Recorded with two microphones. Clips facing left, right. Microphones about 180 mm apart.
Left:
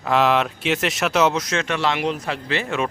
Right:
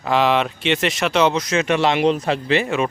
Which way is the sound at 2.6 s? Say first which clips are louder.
Right 3 dB; centre (ahead or behind).